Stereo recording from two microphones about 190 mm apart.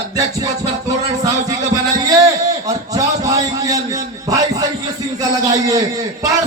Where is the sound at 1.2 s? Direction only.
20° right (ahead or behind).